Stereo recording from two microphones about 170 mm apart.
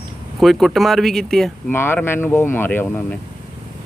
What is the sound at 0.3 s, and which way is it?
Speech, centre (ahead or behind).